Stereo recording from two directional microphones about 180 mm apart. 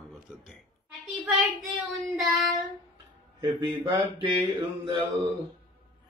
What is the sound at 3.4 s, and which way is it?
Mantra, 25° right (ahead or behind).